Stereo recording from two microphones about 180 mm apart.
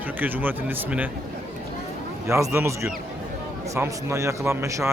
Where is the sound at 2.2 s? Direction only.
15° right (ahead or behind).